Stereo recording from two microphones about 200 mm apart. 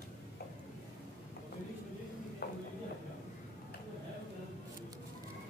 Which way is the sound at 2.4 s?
50° left (ahead or behind).